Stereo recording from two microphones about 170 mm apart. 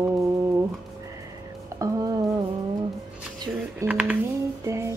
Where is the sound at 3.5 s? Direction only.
10° right (ahead or behind).